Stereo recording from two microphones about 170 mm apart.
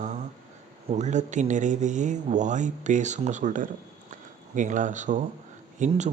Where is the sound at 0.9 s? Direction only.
45° right (ahead or behind).